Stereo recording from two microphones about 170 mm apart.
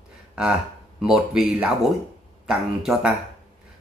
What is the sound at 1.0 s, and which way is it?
Speech, centre (ahead or behind).